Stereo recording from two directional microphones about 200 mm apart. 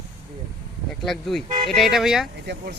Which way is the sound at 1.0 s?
Centre (ahead or behind).